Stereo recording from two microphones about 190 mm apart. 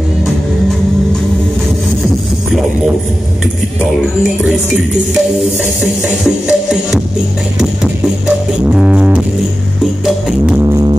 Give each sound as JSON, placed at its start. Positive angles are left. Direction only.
{"t": 6.0, "sound": "music", "side_deg": -5}
{"t": 8.6, "sound": "music", "side_deg": -5}
{"t": 10.6, "sound": "music", "side_deg": -20}